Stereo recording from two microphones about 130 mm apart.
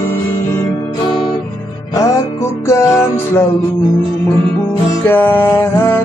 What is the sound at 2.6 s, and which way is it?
Music, 20° left (ahead or behind).